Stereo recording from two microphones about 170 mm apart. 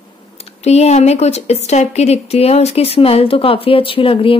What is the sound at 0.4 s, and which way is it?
Speech, 40° left (ahead or behind).